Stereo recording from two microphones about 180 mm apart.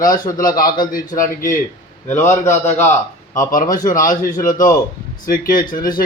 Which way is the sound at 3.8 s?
45° left (ahead or behind).